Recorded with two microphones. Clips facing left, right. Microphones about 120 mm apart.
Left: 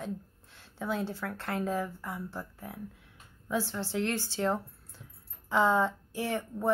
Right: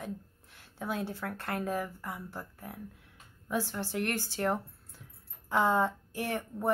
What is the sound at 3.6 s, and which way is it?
Speech, 15° right (ahead or behind).